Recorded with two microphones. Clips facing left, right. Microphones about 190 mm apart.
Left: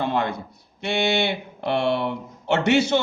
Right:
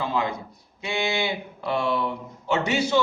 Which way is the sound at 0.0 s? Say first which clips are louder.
Left 2 dB; 65° left (ahead or behind).